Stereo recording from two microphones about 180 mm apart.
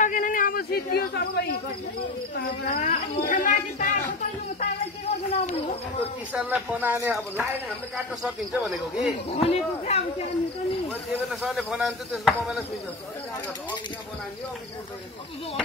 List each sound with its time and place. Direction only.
0.0 s a sound: 45° left (ahead or behind)
2.0 s speech: 60° left (ahead or behind)
2.9 s speech: 45° left (ahead or behind)
6.3 s speech: 5° right (ahead or behind)
9.4 s speech: 35° left (ahead or behind)
10.9 s speech: centre (ahead or behind)